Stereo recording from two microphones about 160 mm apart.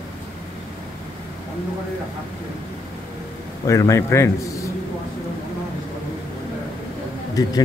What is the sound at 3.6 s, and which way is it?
A man's voice, 20° left (ahead or behind).